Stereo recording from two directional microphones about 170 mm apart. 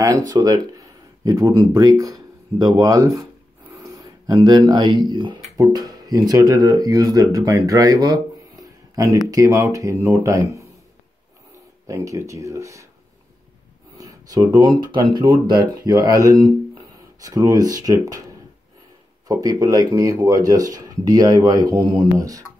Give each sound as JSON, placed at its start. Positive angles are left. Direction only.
{"t": 0.3, "sound": "speech", "side_deg": -20}
{"t": 11.9, "sound": "speech", "side_deg": -20}
{"t": 13.9, "sound": "speech", "side_deg": -20}
{"t": 19.2, "sound": "speech", "side_deg": -20}